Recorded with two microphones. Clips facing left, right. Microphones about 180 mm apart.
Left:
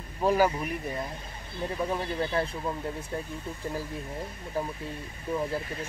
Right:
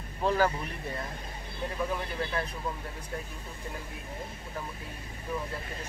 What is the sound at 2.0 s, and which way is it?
Speech, 30° left (ahead or behind).